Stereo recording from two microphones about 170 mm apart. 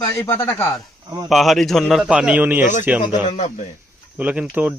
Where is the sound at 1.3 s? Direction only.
Centre (ahead or behind).